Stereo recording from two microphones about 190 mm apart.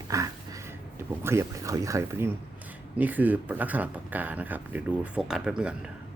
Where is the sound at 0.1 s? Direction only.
20° right (ahead or behind).